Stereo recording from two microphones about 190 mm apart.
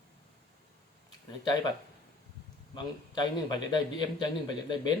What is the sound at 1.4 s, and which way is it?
Speech, 20° left (ahead or behind).